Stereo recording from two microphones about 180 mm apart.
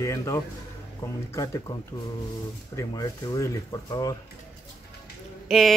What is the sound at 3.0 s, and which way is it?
Speech, 20° left (ahead or behind).